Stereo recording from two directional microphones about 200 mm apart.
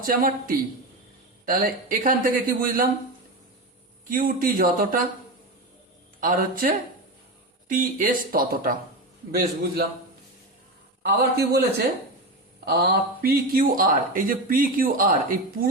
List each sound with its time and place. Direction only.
0.0 s speech: 45° right (ahead or behind)
4.1 s speech: 45° right (ahead or behind)
6.1 s speech: 45° right (ahead or behind)
11.0 s speech: 55° right (ahead or behind)